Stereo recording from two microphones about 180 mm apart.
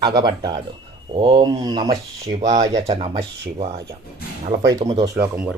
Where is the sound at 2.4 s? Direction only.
40° right (ahead or behind).